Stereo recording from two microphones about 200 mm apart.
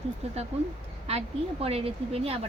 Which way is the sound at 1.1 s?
30° right (ahead or behind).